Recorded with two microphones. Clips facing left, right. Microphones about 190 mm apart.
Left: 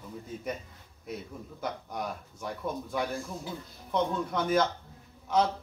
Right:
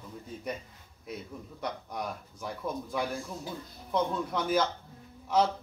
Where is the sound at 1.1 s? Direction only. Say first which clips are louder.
Left 1 dB; centre (ahead or behind).